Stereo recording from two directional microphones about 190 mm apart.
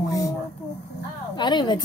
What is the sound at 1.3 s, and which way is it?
Speech, 25° left (ahead or behind).